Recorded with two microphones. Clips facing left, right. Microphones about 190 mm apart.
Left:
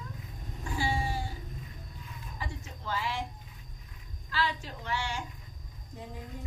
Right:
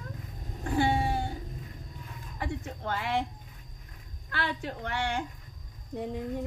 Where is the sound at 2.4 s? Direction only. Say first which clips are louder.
Right 7 dB; 60° right (ahead or behind).